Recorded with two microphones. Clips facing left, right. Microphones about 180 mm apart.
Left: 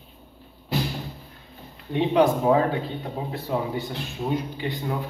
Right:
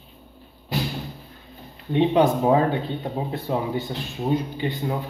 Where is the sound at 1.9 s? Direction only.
25° right (ahead or behind).